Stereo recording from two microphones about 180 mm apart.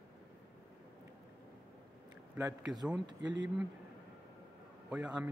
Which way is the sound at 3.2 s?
80° right.